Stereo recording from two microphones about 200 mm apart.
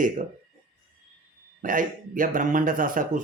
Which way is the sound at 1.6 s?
40° right (ahead or behind).